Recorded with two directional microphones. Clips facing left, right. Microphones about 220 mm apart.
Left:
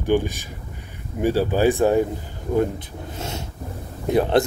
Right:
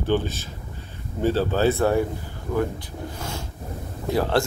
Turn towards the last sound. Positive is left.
turn(degrees=20)  # may be behind; listen again after turning